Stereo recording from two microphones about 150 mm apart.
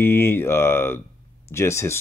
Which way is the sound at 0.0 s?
15° left (ahead or behind).